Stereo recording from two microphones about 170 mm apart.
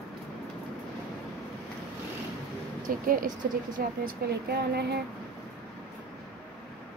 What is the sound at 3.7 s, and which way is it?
A woman's voice, 60° right (ahead or behind).